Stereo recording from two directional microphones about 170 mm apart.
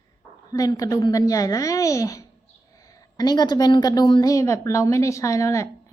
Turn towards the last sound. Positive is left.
turn(degrees=20)  # may be behind; listen again after turning